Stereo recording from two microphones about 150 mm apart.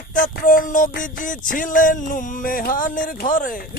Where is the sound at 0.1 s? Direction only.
65° left (ahead or behind).